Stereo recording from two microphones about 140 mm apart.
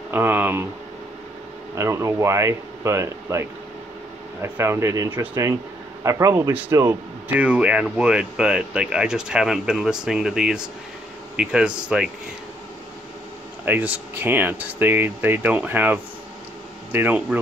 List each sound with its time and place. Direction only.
0.1 s speech: 15° right (ahead or behind)
1.8 s speech: 20° right (ahead or behind); by 12.1 s 5° right (ahead or behind)
13.7 s speech: 10° right (ahead or behind)